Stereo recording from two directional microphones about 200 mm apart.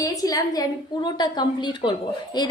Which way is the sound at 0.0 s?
20° left (ahead or behind).